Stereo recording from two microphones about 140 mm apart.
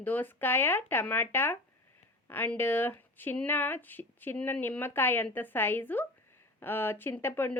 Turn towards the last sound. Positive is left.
turn(degrees=15)  # may be behind; listen again after turning